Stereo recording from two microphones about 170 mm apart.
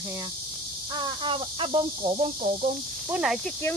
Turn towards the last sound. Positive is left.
turn(degrees=-5)  # may be behind; listen again after turning